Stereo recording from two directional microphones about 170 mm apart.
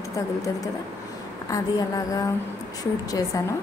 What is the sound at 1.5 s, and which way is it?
Speech, 20° left (ahead or behind).